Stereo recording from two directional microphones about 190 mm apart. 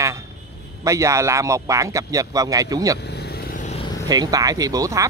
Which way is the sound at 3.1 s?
60° left (ahead or behind).